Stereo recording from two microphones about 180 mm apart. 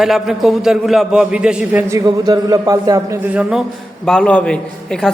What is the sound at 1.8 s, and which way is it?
A man's voice, 20° right (ahead or behind).